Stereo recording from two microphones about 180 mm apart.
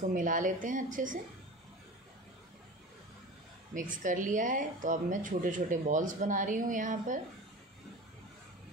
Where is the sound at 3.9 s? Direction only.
45° right (ahead or behind).